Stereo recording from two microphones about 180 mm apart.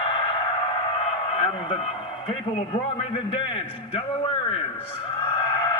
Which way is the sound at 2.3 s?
35° left (ahead or behind).